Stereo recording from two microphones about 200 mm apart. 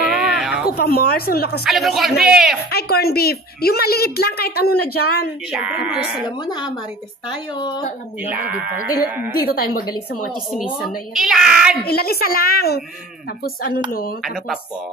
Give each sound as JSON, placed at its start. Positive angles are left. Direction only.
{"t": 0.1, "sound": "a sound", "side_deg": 0}
{"t": 0.7, "sound": "a woman's voice", "side_deg": 50}
{"t": 1.6, "sound": "speech", "side_deg": 0}
{"t": 2.7, "sound": "a woman's voice", "side_deg": 50}
{"t": 5.5, "sound": "speech", "side_deg": -5}
{"t": 6.4, "sound": "speech", "side_deg": 20}
{"t": 8.3, "sound": "speech", "side_deg": -5}
{"t": 8.7, "sound": "a woman's voice", "side_deg": 45}
{"t": 10.5, "sound": "speech", "side_deg": 0}
{"t": 11.8, "sound": "a woman's voice", "side_deg": 50}
{"t": 14.2, "sound": "speech", "side_deg": 0}